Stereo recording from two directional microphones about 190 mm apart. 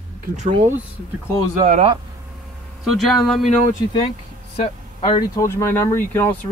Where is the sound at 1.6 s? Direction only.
35° right (ahead or behind).